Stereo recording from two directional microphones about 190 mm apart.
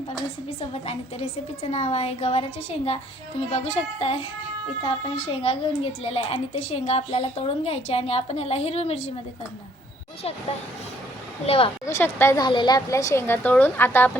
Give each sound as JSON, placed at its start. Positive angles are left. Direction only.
{"t": 0.6, "sound": "a woman's voice", "side_deg": 30}
{"t": 11.4, "sound": "a woman's voice", "side_deg": 30}
{"t": 11.9, "sound": "a woman's voice", "side_deg": 15}